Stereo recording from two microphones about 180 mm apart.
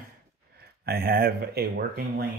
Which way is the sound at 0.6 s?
60° right (ahead or behind).